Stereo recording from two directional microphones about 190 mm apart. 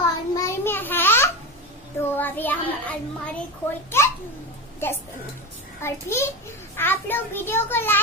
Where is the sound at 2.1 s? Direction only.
10° left (ahead or behind).